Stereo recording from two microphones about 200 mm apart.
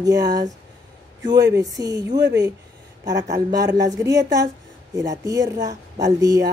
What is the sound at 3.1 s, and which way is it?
Speech, 15° right (ahead or behind).